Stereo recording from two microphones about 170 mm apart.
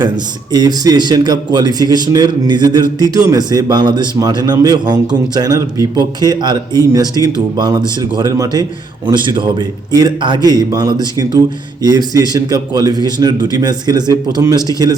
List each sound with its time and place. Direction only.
0.5 s a man's voice: 25° right (ahead or behind)